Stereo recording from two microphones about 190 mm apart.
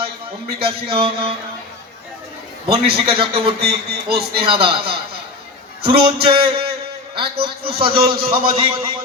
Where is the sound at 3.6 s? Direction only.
55° right (ahead or behind).